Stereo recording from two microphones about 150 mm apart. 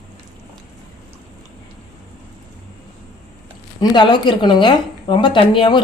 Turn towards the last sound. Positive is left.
turn(degrees=30)  # may be behind; listen again after turning